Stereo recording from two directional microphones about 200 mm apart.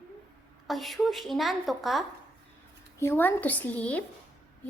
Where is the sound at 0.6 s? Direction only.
Centre (ahead or behind).